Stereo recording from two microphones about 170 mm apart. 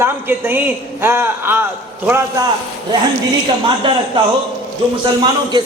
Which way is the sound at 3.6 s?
30° right (ahead or behind).